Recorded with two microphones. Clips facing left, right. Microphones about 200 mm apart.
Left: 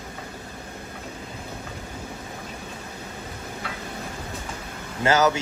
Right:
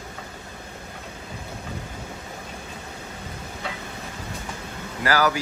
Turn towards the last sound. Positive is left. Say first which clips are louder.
# left 2 dB
turn(degrees=25)  # may be behind; listen again after turning